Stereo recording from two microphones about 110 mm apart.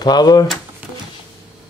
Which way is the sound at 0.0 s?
40° left (ahead or behind).